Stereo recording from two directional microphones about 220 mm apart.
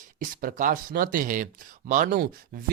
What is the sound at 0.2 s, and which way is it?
Speech, 40° right (ahead or behind).